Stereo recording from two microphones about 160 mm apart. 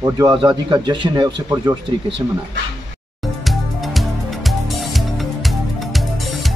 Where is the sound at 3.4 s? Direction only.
Centre (ahead or behind).